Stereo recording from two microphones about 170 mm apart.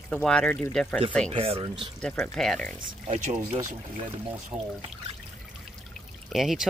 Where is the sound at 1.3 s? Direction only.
35° right (ahead or behind).